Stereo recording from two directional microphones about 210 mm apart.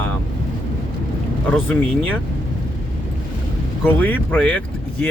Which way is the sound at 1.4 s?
5° left (ahead or behind).